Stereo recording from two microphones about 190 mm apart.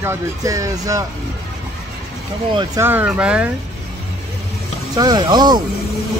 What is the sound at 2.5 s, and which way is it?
Speech, 25° right (ahead or behind).